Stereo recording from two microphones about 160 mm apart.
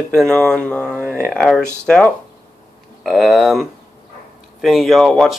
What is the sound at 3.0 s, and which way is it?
Speech, centre (ahead or behind).